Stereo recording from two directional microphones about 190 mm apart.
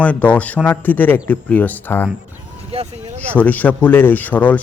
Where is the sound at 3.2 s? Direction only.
10° left (ahead or behind).